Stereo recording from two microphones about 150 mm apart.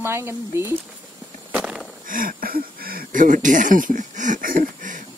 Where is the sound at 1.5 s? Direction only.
5° right (ahead or behind).